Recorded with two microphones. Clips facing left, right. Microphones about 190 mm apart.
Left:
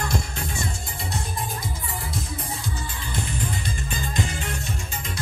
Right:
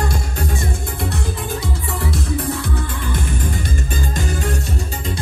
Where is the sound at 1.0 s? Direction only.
70° right (ahead or behind); by 4.6 s 45° right (ahead or behind).